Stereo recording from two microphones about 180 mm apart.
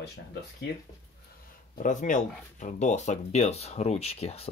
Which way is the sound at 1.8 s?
45° left (ahead or behind).